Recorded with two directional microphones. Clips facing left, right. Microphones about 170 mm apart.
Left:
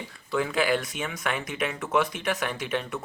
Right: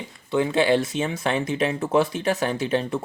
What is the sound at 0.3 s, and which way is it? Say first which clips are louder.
Speech: right 5 dB; 20° right (ahead or behind).